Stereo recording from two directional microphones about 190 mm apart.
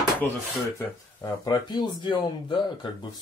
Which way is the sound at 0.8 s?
20° left (ahead or behind).